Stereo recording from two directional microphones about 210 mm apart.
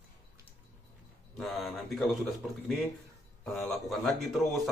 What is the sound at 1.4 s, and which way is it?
Speech, centre (ahead or behind).